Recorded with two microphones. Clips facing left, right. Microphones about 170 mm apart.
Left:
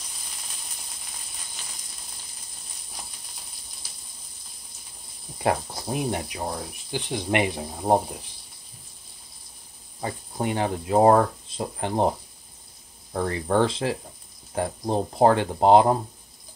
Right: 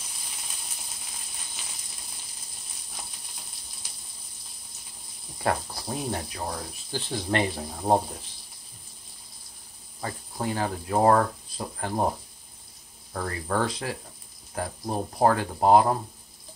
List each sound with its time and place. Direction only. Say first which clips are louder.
5.4 s speech: left 3 dB; 20° left (ahead or behind)
7.8 s speech: left 2 dB; 5° left (ahead or behind)
9.9 s speech: left 3 dB; 20° left (ahead or behind)
13.1 s speech: left 5 dB; 25° left (ahead or behind)